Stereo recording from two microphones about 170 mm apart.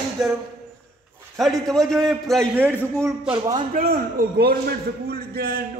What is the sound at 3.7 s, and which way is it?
A man's voice, 60° right (ahead or behind).